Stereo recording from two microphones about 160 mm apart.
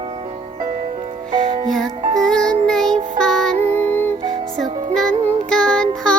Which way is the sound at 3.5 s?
40° right (ahead or behind).